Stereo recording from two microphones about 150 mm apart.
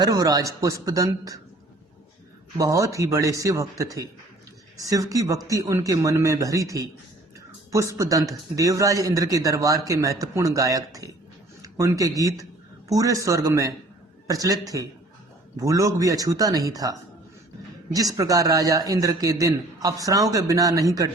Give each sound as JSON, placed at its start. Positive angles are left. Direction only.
{"t": 0.0, "sound": "a man's voice", "side_deg": -25}
{"t": 2.6, "sound": "a man's voice", "side_deg": -20}